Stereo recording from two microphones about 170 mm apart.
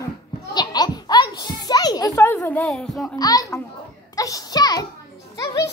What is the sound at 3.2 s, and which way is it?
A child's voice, 20° left (ahead or behind).